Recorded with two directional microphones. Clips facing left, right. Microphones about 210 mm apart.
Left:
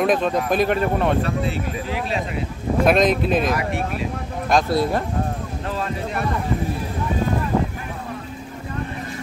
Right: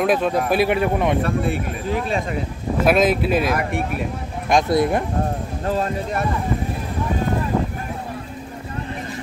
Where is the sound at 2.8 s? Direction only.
5° right (ahead or behind).